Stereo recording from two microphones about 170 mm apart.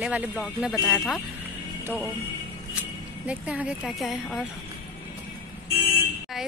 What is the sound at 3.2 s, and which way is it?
A woman's voice, 5° right (ahead or behind).